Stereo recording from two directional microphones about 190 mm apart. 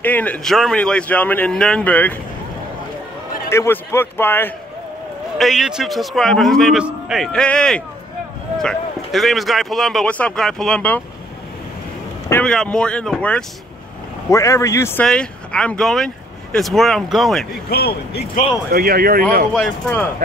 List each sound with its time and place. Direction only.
0.0 s a man's voice: 10° left (ahead or behind)
3.4 s a man's voice: 15° left (ahead or behind)
5.4 s a man's voice: centre (ahead or behind)
12.3 s a man's voice: 5° left (ahead or behind)
14.3 s a man's voice: 15° left (ahead or behind); by 17.5 s centre (ahead or behind)
17.6 s speech: 55° left (ahead or behind)
18.7 s speech: 50° right (ahead or behind)
19.5 s a man's voice: 5° left (ahead or behind)